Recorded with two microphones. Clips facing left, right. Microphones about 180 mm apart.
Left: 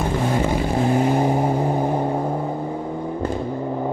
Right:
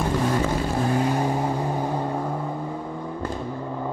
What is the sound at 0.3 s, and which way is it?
Vehicle, 15° left (ahead or behind).